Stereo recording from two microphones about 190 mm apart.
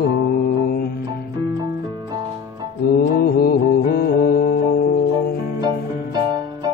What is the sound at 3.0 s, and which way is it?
Music, 55° left (ahead or behind).